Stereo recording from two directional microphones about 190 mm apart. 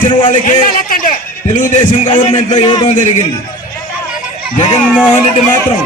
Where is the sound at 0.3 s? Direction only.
45° left (ahead or behind).